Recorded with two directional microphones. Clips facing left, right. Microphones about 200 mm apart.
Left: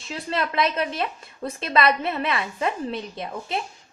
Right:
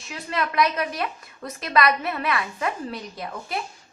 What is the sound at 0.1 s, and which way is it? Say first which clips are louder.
A woman's voice: left 1 dB; 30° left (ahead or behind).